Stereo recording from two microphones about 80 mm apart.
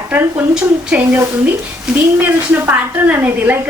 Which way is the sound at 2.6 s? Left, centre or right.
Right.